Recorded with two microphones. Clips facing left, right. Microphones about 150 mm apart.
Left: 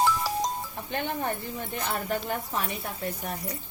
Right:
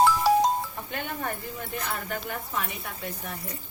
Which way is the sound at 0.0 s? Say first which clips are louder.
Right 6 dB; 65° right (ahead or behind).